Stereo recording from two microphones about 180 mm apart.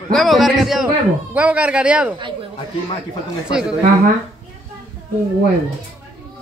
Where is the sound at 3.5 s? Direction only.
5° right (ahead or behind).